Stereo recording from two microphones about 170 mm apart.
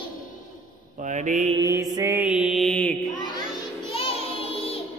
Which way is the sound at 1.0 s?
45° right (ahead or behind).